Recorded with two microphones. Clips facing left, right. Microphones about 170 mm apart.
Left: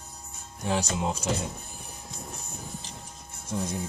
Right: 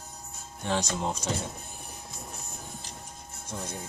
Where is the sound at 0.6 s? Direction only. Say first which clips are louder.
Left 1 dB; 10° left (ahead or behind).